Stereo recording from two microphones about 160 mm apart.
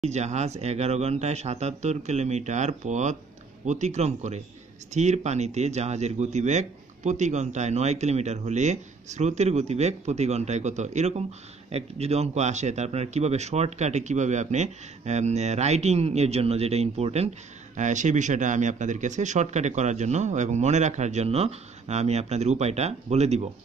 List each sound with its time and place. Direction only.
0.0 s speech: 45° right (ahead or behind)